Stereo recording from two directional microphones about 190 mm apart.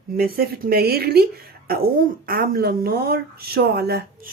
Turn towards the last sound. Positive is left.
turn(degrees=-60)  # may be behind; listen again after turning